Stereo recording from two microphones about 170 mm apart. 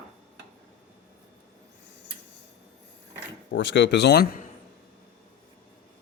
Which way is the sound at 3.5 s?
90° left.